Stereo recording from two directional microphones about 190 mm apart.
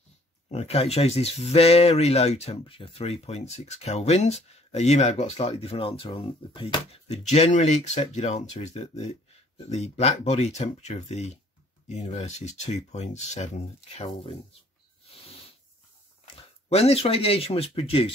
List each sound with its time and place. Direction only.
0.5 s speech: 35° left (ahead or behind)
16.3 s speech: 30° left (ahead or behind)